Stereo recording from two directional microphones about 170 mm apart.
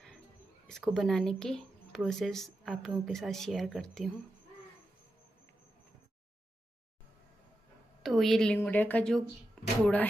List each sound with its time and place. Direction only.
0.7 s speech: centre (ahead or behind)
8.0 s speech: centre (ahead or behind)
9.6 s a sound: 5° left (ahead or behind)